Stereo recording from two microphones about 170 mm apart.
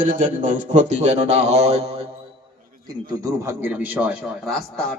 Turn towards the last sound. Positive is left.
turn(degrees=-10)  # may be behind; listen again after turning